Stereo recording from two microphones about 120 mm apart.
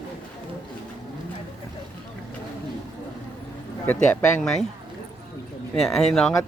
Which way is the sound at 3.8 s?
10° left (ahead or behind).